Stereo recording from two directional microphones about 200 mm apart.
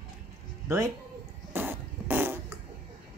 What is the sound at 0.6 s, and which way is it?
Speech, 15° right (ahead or behind).